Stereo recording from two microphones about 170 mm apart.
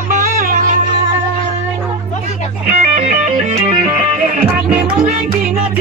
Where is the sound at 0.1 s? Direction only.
50° right (ahead or behind).